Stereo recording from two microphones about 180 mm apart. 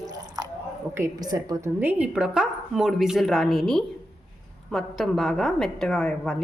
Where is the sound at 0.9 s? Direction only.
20° right (ahead or behind).